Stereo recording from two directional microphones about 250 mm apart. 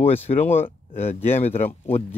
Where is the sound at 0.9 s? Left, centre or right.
Left.